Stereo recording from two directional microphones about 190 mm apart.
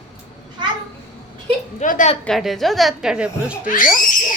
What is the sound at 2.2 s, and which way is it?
A woman's voice, centre (ahead or behind).